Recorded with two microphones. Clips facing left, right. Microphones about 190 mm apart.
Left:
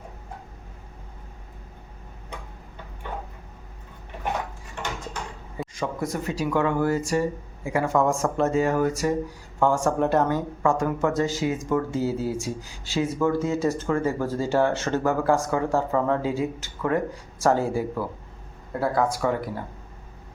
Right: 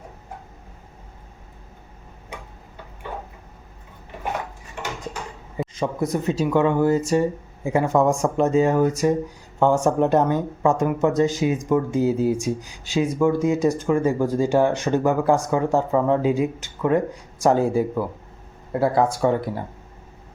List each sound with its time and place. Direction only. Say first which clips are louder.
5.7 s speech: right 4 dB; 20° right (ahead or behind)